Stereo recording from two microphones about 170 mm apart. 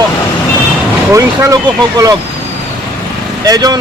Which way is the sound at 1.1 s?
20° right (ahead or behind).